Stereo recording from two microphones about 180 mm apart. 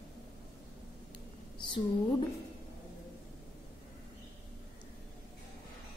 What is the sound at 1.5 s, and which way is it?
Speech, 25° left (ahead or behind).